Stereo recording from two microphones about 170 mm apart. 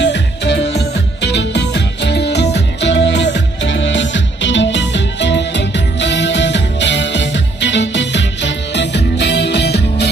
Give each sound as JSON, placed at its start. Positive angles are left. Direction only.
{"t": 0.0, "sound": "music", "side_deg": 90}